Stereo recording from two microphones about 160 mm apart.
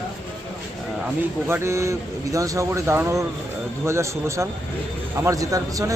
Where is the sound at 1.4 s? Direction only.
15° right (ahead or behind).